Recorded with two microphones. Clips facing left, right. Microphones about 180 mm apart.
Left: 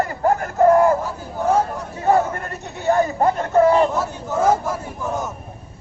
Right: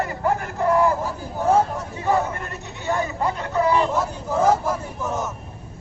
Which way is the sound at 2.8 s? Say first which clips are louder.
Left 6 dB; 45° left (ahead or behind).